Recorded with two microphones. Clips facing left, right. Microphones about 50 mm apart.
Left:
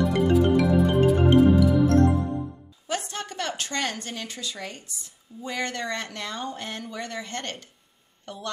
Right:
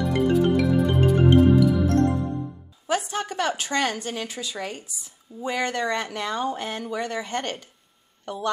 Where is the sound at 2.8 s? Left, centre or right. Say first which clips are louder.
Right 5 dB; centre.